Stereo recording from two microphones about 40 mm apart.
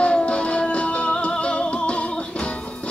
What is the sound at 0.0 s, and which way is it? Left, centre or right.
Music, left.